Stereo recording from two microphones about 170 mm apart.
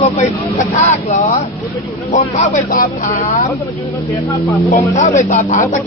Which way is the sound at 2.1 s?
45° left (ahead or behind).